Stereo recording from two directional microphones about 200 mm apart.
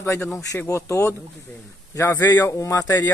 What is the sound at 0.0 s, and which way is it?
Speech, 15° left (ahead or behind).